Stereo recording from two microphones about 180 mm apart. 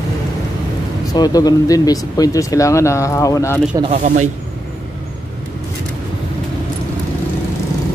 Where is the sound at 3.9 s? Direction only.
45° right (ahead or behind).